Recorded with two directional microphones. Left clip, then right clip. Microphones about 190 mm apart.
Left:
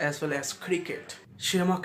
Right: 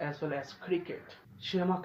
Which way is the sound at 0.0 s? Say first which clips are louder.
Left 6 dB; 20° left (ahead or behind).